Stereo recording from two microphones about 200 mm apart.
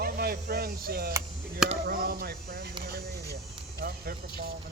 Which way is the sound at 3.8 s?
50° right (ahead or behind).